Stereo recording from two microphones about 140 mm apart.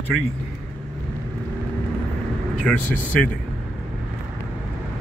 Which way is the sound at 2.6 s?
10° left (ahead or behind).